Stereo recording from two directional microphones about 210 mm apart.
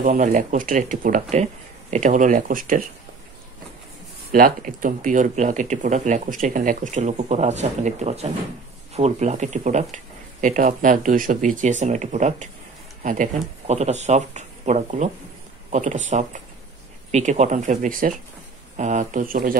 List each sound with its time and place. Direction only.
0.0 s speech: 40° right (ahead or behind)
4.3 s speech: 40° right (ahead or behind)